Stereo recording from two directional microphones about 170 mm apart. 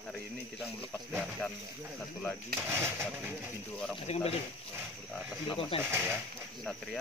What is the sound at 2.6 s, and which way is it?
Speech, 10° right (ahead or behind).